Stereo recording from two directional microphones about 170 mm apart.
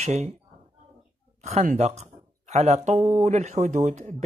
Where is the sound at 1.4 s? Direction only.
40° right (ahead or behind).